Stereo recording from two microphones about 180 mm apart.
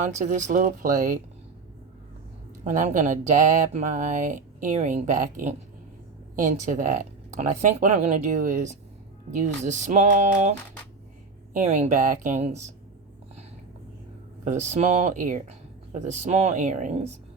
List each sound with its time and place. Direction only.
0.0 s speech: 40° right (ahead or behind)
2.6 s speech: 40° right (ahead or behind)
11.5 s speech: 40° right (ahead or behind)
14.4 s speech: 40° right (ahead or behind)